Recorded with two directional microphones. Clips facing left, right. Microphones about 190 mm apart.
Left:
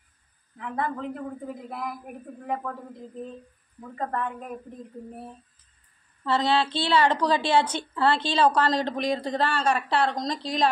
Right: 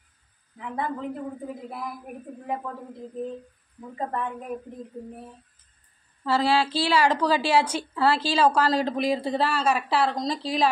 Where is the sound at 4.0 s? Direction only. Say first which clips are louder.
Even; 20° right (ahead or behind).